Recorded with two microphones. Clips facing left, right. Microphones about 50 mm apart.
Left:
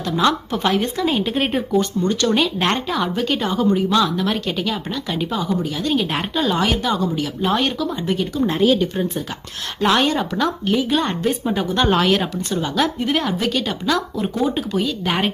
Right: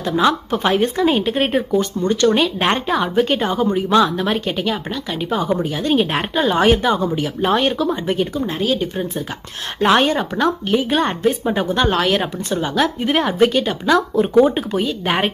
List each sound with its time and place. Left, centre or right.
0.0 s speech: centre
5.4 s speech: right; by 7.7 s centre
8.0 s speech: right
8.4 s speech: centre
9.8 s speech: right
10.6 s speech: centre
12.2 s speech: centre